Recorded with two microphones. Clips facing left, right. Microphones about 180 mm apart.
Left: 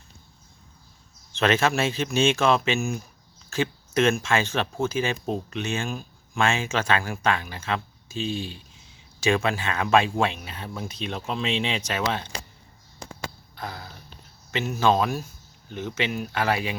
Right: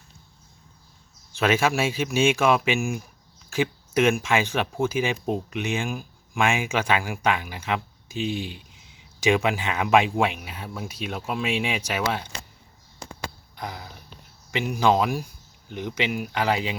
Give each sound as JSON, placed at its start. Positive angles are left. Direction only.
{"t": 1.3, "sound": "speech", "side_deg": -10}
{"t": 13.6, "sound": "speech", "side_deg": -15}